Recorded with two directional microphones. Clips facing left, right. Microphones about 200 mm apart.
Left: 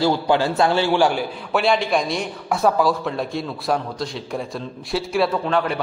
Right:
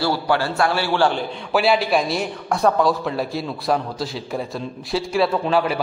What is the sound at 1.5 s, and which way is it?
A man's voice, 5° right (ahead or behind).